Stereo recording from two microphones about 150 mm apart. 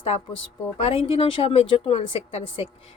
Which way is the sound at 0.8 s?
40° left (ahead or behind).